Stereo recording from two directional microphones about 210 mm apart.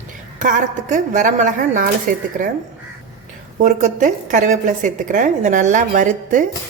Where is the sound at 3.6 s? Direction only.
35° right (ahead or behind).